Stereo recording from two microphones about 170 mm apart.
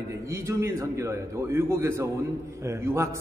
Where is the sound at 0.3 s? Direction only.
15° right (ahead or behind).